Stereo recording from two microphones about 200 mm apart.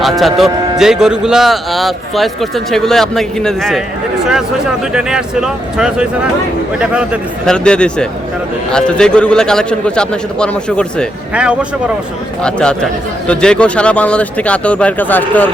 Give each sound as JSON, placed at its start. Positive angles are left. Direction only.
{"t": 0.0, "sound": "speech", "side_deg": 0}
{"t": 4.9, "sound": "speech", "side_deg": -5}
{"t": 12.4, "sound": "speech", "side_deg": 5}